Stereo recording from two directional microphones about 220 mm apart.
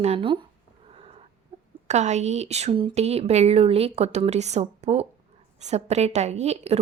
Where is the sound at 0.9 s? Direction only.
25° right (ahead or behind).